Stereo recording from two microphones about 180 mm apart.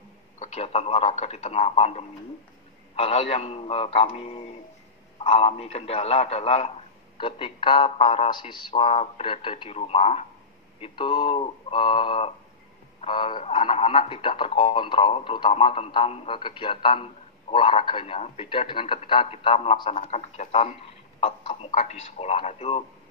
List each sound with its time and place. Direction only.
0.4 s a man's voice: 35° left (ahead or behind)
21.2 s a sound: 30° left (ahead or behind)
21.6 s a man's voice: 40° left (ahead or behind)